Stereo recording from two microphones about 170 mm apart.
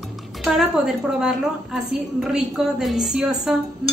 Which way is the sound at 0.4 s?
Centre (ahead or behind).